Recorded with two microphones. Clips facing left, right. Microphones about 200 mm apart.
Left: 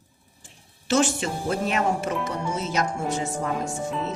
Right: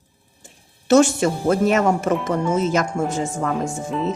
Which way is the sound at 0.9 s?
45° right (ahead or behind).